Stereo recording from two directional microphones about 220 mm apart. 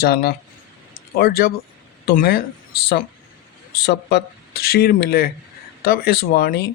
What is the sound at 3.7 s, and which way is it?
Speech, 50° left (ahead or behind).